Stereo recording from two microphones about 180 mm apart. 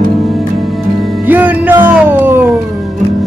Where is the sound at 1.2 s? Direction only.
10° right (ahead or behind).